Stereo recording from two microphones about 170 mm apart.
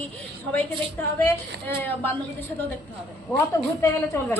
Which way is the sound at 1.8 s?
10° left (ahead or behind).